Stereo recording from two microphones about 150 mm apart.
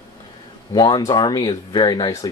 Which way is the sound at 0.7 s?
30° left (ahead or behind).